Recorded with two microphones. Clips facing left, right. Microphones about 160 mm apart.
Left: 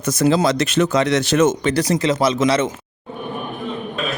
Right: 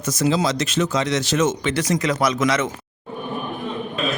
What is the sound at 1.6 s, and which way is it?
Speech, 35° left (ahead or behind).